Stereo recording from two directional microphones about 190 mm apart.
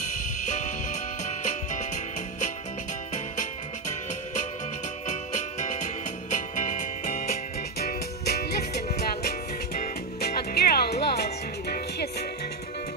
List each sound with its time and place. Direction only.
0.5 s music: 40° left (ahead or behind)
6.3 s music: 40° left (ahead or behind)
7.8 s music: 55° left (ahead or behind)
9.8 s music: 55° left (ahead or behind)